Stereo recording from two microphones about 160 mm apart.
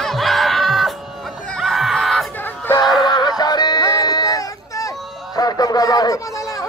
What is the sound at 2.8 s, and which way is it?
Music, centre (ahead or behind).